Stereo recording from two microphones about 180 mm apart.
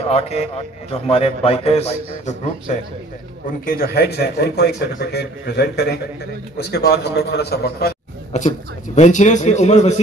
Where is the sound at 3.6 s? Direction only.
55° left (ahead or behind).